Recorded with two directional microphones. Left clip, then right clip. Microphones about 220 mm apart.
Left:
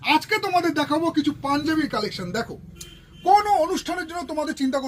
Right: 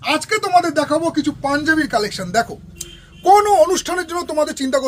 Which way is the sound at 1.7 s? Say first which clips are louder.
Right 6 dB; 45° right (ahead or behind).